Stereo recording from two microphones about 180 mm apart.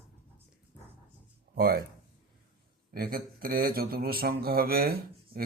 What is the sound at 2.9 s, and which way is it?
Speech, 55° right (ahead or behind).